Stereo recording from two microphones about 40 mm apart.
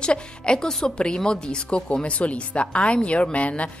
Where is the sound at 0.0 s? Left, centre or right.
Left.